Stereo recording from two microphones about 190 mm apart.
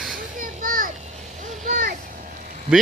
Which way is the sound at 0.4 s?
45° right (ahead or behind).